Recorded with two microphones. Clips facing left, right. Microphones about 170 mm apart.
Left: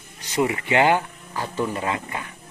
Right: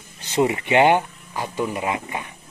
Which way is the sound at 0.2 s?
25° right (ahead or behind).